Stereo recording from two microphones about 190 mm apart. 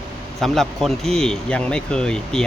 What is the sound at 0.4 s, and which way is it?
Speech, centre (ahead or behind).